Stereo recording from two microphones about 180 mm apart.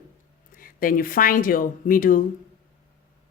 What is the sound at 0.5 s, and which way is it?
Speech, 50° left (ahead or behind).